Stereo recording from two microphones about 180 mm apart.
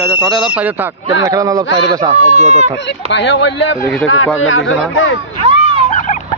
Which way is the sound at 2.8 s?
75° left (ahead or behind).